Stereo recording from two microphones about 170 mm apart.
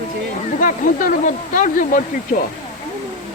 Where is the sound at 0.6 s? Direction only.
55° left (ahead or behind).